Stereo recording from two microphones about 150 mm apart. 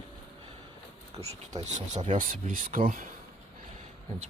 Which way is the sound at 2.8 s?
50° right (ahead or behind).